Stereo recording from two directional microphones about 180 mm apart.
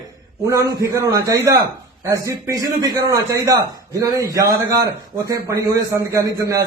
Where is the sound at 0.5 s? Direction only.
15° right (ahead or behind).